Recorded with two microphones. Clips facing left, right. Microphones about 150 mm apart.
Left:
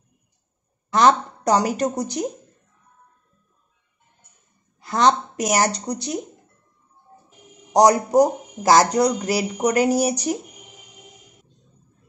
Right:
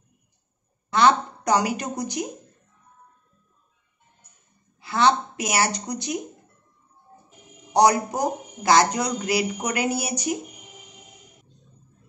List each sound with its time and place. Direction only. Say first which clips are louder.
0.9 s speech: left 2 dB; 40° left (ahead or behind)
4.7 s speech: left 2 dB; 40° left (ahead or behind)
7.7 s speech: left 4 dB; 40° left (ahead or behind)